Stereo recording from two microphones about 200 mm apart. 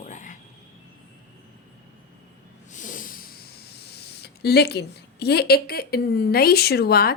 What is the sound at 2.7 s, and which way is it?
Speech, 40° left (ahead or behind).